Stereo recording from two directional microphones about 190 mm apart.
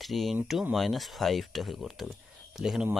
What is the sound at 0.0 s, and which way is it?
Speech, centre (ahead or behind).